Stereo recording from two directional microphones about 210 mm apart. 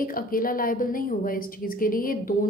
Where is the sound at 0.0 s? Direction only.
45° left (ahead or behind).